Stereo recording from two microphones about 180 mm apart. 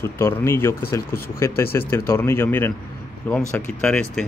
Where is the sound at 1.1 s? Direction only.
55° left (ahead or behind).